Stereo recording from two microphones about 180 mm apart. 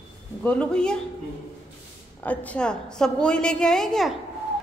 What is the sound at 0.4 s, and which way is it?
Speech, 5° left (ahead or behind).